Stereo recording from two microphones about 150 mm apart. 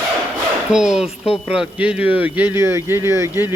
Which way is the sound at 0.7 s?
5° right (ahead or behind).